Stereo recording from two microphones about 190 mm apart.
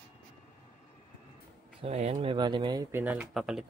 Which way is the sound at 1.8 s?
35° right (ahead or behind).